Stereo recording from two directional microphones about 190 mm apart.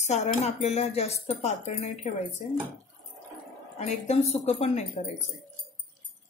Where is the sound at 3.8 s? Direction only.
35° left (ahead or behind).